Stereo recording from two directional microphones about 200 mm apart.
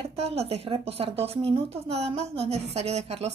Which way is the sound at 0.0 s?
30° right (ahead or behind).